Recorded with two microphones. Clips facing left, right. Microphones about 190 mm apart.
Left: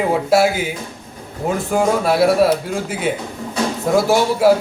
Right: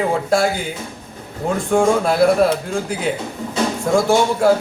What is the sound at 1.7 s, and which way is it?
A man's voice, 5° left (ahead or behind).